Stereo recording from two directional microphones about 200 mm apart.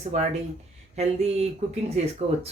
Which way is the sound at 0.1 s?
35° right (ahead or behind).